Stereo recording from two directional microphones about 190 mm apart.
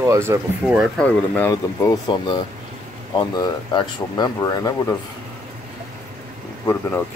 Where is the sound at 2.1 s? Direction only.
25° left (ahead or behind).